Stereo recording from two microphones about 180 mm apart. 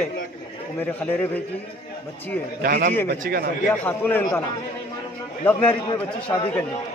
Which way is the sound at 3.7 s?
10° left (ahead or behind).